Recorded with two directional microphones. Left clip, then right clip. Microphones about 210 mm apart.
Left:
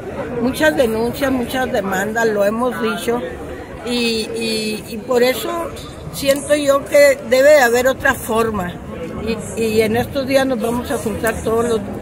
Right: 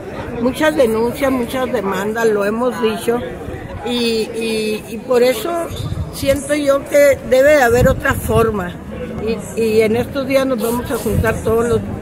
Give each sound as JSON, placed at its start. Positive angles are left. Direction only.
{"t": 0.5, "sound": "speech", "side_deg": -10}